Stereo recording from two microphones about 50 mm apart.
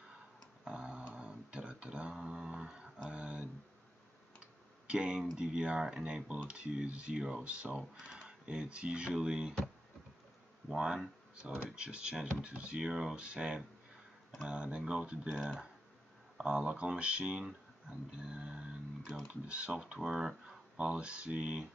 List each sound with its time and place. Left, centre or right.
0.7 s a sound: centre
2.1 s a sound: centre
4.4 s speech: centre
10.7 s speech: centre
15.2 s speech: centre
16.3 s speech: centre
17.8 s a sound: centre
19.2 s speech: right
20.0 s speech: centre